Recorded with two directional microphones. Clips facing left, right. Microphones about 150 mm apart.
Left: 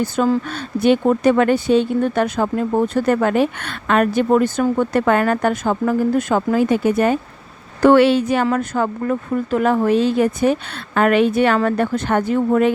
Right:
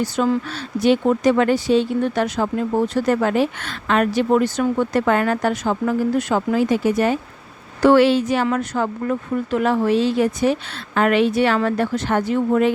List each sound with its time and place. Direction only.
0.0 s a woman's voice: 50° left (ahead or behind)